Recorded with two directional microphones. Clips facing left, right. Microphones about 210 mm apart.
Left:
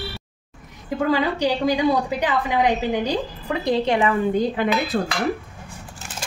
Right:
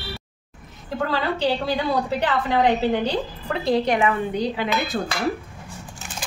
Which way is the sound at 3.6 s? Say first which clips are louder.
Even; 25° left (ahead or behind).